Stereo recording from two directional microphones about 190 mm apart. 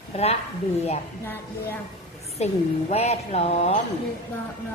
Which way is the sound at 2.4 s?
35° left (ahead or behind).